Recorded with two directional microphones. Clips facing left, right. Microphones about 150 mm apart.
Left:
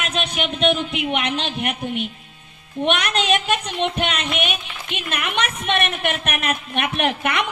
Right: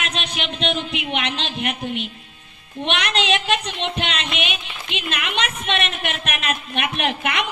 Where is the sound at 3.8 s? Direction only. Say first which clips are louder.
Left 3 dB; 50° left (ahead or behind).